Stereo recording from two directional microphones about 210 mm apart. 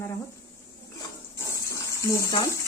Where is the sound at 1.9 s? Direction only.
15° left (ahead or behind).